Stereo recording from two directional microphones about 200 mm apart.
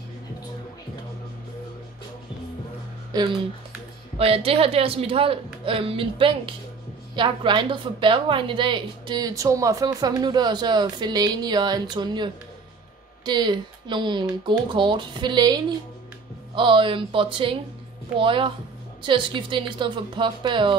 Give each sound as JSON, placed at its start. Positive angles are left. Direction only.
{"t": 3.1, "sound": "a woman's voice", "side_deg": -20}